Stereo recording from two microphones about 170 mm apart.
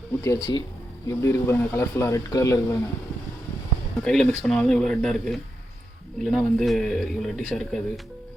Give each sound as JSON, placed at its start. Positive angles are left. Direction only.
{"t": 0.3, "sound": "a man's voice", "side_deg": 25}
{"t": 4.0, "sound": "speech", "side_deg": 5}